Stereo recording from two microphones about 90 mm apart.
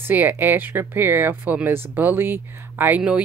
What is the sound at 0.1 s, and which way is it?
Speech, 20° right (ahead or behind).